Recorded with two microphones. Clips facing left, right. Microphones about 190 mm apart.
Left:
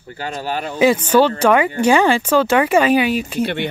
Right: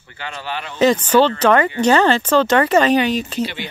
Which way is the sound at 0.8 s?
10° left (ahead or behind).